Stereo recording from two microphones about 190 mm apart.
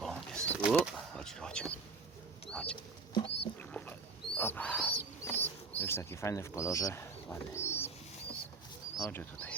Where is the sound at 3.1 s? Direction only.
30° left (ahead or behind).